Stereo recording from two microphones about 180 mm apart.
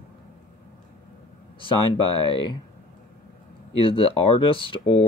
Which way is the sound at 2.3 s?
25° left (ahead or behind).